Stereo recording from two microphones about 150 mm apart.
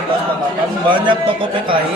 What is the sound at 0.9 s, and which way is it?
Speech, 35° right (ahead or behind).